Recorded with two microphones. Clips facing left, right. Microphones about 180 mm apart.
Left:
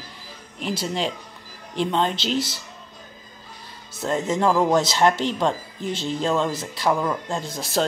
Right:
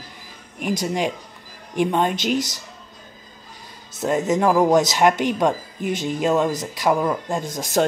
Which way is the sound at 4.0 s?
15° right (ahead or behind).